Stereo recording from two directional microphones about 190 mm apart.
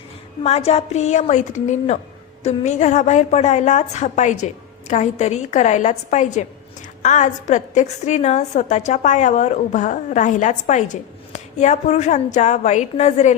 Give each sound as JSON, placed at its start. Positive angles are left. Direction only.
{"t": 0.4, "sound": "a woman's voice", "side_deg": 35}